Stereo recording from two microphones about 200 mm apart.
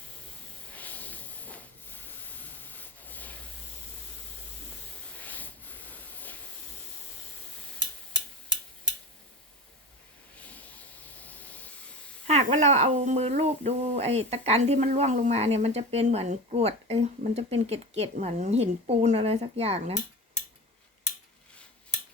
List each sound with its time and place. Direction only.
0.7 s hiss: 10° left (ahead or behind)
5.1 s hiss: 10° left (ahead or behind)
10.3 s rub: 5° left (ahead or behind)
12.3 s speech: 35° right (ahead or behind)